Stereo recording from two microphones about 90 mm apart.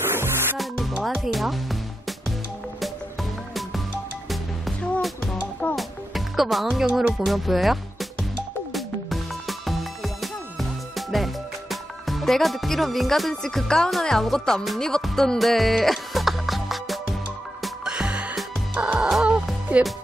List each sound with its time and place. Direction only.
0.0 s music: 25° right (ahead or behind)
0.6 s music: centre (ahead or behind)
5.0 s music: centre (ahead or behind)